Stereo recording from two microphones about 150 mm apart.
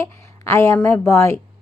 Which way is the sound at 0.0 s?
20° left (ahead or behind).